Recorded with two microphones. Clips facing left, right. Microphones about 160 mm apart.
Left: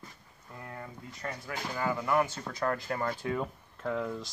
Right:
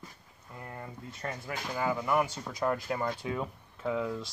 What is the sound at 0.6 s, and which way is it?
Speech, 20° right (ahead or behind).